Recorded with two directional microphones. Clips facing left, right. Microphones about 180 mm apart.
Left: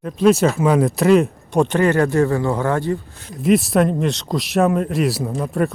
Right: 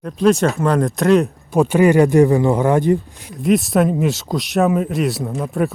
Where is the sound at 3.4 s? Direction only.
Centre (ahead or behind).